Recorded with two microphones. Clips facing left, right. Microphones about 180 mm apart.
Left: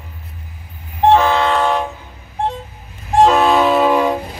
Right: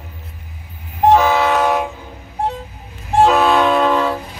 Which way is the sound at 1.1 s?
5° right (ahead or behind).